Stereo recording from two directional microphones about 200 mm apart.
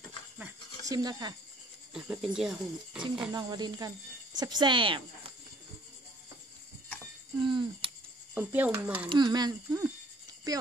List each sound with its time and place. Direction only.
0.4 s a sound: 15° right (ahead or behind)
2.0 s speech: 5° right (ahead or behind)
3.3 s speech: 20° right (ahead or behind)
7.4 s speech: 25° right (ahead or behind)
8.4 s speech: 10° right (ahead or behind)
9.1 s speech: 20° right (ahead or behind)